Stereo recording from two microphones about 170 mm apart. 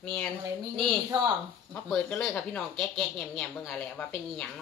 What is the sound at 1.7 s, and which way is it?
Speech, 5° left (ahead or behind).